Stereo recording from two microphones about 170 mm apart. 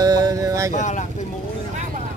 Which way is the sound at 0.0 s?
20° right (ahead or behind).